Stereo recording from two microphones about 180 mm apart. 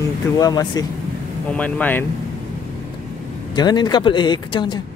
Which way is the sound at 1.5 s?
10° left (ahead or behind).